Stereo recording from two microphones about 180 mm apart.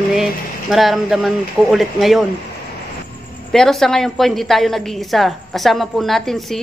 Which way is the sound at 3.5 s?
5° left (ahead or behind).